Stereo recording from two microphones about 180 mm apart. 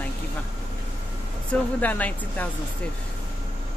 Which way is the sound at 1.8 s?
10° left (ahead or behind).